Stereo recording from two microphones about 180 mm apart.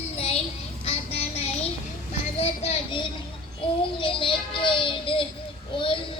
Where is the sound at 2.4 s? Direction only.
30° left (ahead or behind).